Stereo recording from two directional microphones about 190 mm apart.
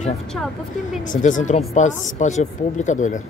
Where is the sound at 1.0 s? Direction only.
40° left (ahead or behind).